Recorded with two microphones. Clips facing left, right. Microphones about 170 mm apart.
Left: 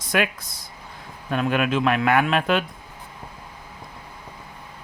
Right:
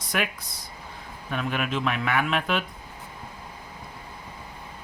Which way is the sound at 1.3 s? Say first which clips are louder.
Left 6 dB; 55° left (ahead or behind).